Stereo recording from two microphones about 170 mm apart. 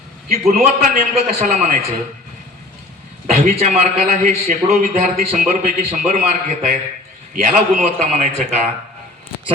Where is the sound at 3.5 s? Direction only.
40° right (ahead or behind).